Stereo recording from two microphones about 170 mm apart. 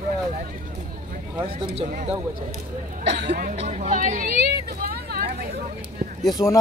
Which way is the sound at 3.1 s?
90° right.